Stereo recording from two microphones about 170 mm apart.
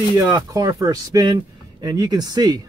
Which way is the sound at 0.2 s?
20° right (ahead or behind).